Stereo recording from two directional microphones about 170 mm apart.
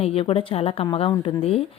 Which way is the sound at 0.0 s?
35° left (ahead or behind).